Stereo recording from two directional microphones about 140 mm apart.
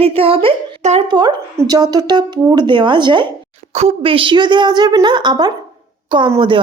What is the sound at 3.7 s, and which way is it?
A woman's voice, 45° right (ahead or behind).